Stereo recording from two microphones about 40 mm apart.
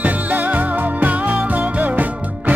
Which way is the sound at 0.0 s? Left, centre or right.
Right.